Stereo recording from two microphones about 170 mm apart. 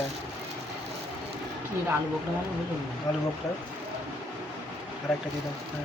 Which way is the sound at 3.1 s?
25° left (ahead or behind).